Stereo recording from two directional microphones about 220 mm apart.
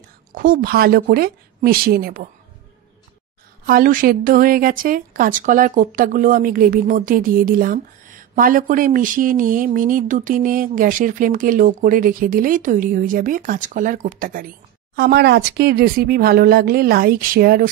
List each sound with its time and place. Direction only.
0.3 s speech: 40° right (ahead or behind)
3.6 s a woman's voice: 40° right (ahead or behind)